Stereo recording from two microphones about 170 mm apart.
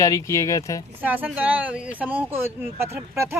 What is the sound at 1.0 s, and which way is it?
Speech, 10° right (ahead or behind).